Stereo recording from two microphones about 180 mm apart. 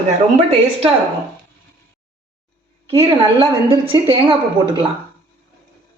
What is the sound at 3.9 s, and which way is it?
Speech, 30° right (ahead or behind).